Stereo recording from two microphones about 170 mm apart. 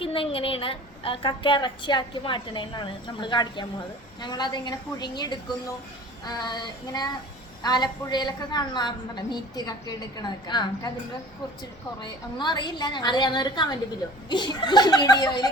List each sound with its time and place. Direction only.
0.0 s a woman's voice: 30° left (ahead or behind)
12.0 s a woman's voice: 25° left (ahead or behind)